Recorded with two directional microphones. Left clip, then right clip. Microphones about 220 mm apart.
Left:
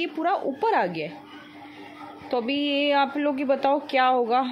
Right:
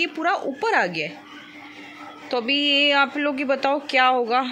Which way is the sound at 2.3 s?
5° left (ahead or behind).